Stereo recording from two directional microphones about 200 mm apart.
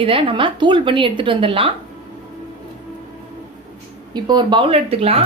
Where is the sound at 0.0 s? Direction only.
25° right (ahead or behind).